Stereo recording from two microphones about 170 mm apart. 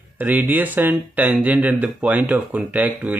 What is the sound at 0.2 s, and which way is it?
Speech, 10° right (ahead or behind).